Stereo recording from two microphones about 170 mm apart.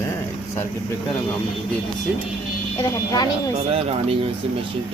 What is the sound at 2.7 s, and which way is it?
Speech, 20° left (ahead or behind).